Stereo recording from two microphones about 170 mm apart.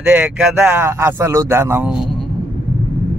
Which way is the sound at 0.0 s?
10° right (ahead or behind).